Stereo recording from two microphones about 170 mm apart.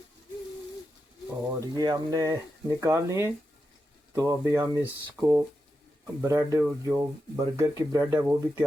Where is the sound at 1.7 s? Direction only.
25° right (ahead or behind).